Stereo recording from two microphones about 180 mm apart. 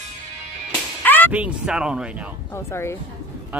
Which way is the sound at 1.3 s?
5° right (ahead or behind).